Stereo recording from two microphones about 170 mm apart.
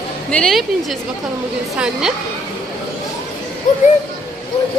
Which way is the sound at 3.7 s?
50° left (ahead or behind).